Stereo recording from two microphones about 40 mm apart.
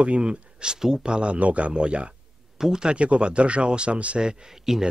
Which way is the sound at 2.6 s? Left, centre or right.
Centre.